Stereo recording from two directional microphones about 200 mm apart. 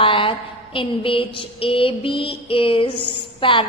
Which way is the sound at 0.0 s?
25° left (ahead or behind).